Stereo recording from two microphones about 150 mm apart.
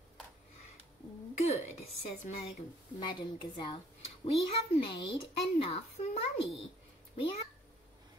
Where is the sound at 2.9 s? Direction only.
30° left (ahead or behind).